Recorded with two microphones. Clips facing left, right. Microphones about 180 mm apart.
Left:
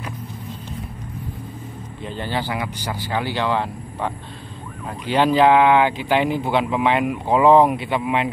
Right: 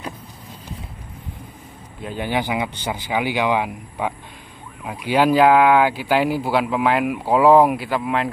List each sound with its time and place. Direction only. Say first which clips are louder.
2.0 s speech: right 3 dB; 10° right (ahead or behind)